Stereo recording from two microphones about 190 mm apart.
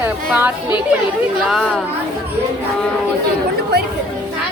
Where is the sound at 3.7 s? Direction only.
55° right (ahead or behind).